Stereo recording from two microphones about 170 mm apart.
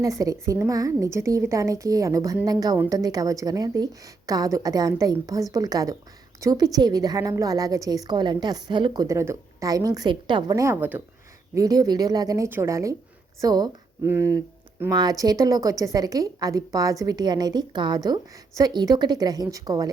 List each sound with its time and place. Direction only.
0.0 s speech: 20° right (ahead or behind)